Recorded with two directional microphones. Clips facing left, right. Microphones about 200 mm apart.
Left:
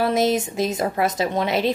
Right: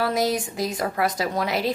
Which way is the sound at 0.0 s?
25° left (ahead or behind).